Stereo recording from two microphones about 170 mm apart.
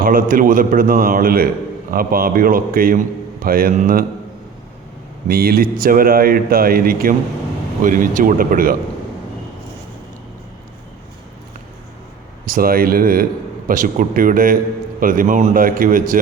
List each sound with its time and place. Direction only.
0.0 s speech: 55° right (ahead or behind)
5.3 s speech: 65° right (ahead or behind)
12.5 s speech: 60° right (ahead or behind)